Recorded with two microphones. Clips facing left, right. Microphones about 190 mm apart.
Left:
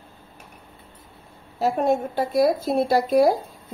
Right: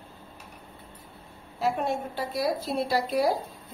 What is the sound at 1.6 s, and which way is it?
A woman's voice, 40° left (ahead or behind).